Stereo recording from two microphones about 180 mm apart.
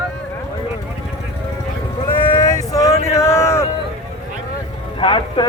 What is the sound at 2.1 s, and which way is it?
Vehicle, 25° left (ahead or behind).